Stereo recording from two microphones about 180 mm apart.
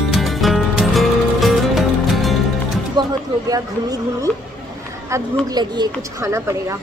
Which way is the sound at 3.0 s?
20° right (ahead or behind).